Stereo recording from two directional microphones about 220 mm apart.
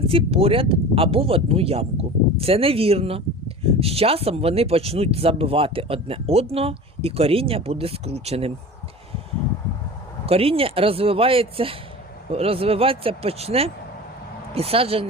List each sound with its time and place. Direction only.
0.1 s speech: 25° right (ahead or behind)
10.2 s speech: 25° right (ahead or behind)